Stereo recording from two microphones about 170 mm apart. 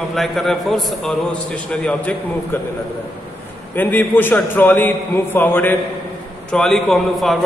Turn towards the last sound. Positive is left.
turn(degrees=0)  # may be behind; listen again after turning